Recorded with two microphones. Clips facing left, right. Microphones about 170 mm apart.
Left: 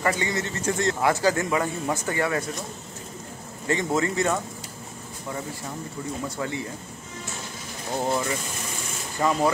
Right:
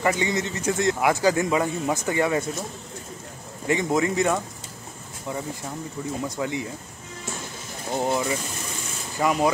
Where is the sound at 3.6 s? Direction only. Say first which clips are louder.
Right 2 dB; 15° right (ahead or behind).